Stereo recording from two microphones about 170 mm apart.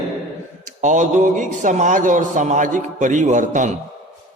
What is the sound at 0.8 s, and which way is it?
Mantra, 45° right (ahead or behind).